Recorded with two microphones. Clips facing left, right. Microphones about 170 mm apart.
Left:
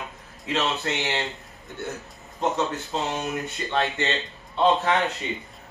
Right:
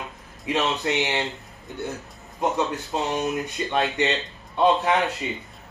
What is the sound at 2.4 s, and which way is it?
A man's voice, 10° right (ahead or behind).